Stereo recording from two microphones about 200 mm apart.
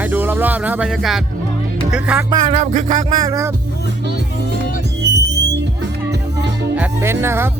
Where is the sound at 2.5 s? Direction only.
35° right (ahead or behind).